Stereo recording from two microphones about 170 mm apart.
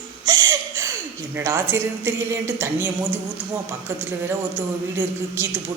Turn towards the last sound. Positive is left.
turn(degrees=-10)  # may be behind; listen again after turning